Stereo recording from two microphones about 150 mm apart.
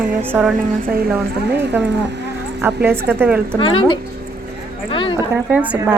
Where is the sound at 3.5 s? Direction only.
35° left (ahead or behind).